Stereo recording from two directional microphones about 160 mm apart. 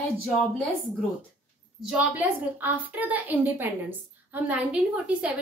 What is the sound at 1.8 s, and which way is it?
A woman's voice, 10° right (ahead or behind).